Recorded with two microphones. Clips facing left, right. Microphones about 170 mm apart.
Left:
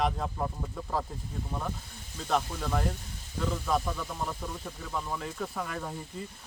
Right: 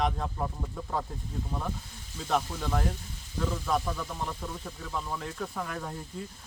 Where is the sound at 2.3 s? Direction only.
Centre (ahead or behind).